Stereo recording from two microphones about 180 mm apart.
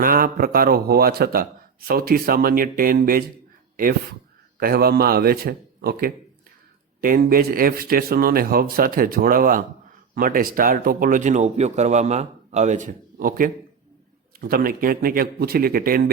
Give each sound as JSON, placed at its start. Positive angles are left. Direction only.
{"t": 0.0, "sound": "a man's voice", "side_deg": -55}
{"t": 4.6, "sound": "a man's voice", "side_deg": -60}